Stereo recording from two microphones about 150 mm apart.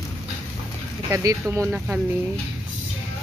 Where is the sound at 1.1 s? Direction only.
20° right (ahead or behind).